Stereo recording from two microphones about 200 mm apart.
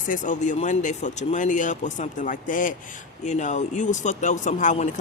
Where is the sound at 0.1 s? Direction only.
40° left (ahead or behind).